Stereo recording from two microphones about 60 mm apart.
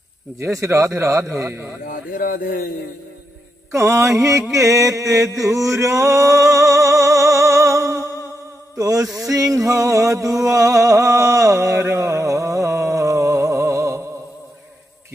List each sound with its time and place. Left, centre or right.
0.4 s speech: right
3.7 s mantra: right
8.7 s a sound: right